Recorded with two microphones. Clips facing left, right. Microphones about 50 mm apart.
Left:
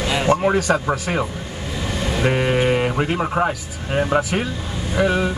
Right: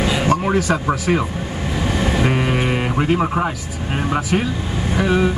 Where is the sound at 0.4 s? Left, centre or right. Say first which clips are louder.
Even; centre.